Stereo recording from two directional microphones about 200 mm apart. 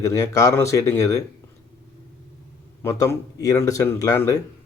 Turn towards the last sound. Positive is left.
turn(degrees=15)  # may be behind; listen again after turning